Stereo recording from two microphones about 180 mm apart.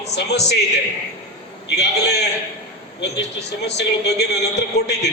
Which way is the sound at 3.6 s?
70° left (ahead or behind).